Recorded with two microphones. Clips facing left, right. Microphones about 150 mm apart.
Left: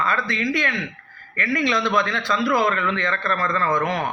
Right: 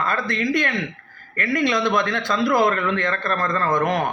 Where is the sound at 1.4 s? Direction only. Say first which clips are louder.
Right 1 dB; 45° right (ahead or behind).